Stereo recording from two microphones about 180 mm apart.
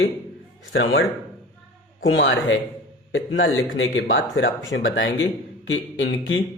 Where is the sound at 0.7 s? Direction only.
90° left.